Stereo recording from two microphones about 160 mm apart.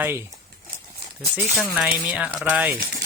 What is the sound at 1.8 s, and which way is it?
Speech, 5° right (ahead or behind).